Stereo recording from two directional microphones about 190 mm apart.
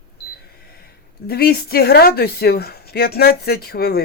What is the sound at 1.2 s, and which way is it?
Speech, 55° left (ahead or behind).